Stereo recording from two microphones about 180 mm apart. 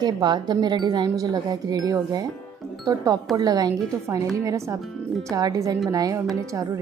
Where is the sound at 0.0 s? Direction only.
25° right (ahead or behind).